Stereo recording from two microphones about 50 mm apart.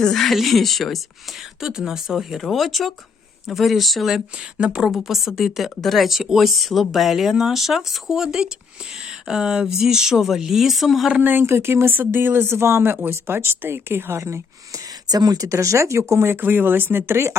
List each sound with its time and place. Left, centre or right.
0.0 s speech: centre
1.6 s speech: centre
4.5 s speech: centre
5.0 s speech: centre
11.2 s speech: right
11.4 s speech: right
11.9 s speech: right
14.2 s speech: right
15.4 s speech: right
16.2 s speech: right